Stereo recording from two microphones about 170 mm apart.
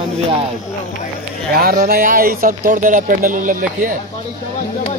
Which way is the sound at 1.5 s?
65° right (ahead or behind).